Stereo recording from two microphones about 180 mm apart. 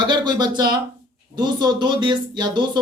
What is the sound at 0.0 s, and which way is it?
Speech, 25° right (ahead or behind).